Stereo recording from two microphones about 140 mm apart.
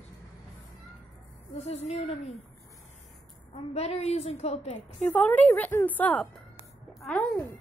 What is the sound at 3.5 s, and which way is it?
A woman's voice, 50° left (ahead or behind).